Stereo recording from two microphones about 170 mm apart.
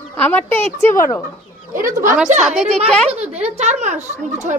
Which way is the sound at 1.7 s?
50° right (ahead or behind).